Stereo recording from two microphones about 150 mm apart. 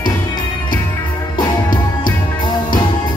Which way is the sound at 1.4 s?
30° left (ahead or behind).